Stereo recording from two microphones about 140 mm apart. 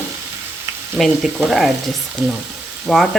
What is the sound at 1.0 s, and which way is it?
Speech, centre (ahead or behind).